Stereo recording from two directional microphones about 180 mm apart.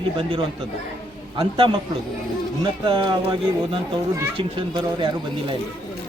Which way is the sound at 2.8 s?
25° right (ahead or behind).